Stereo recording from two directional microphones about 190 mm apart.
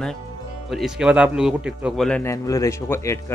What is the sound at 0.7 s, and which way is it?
Speech, centre (ahead or behind).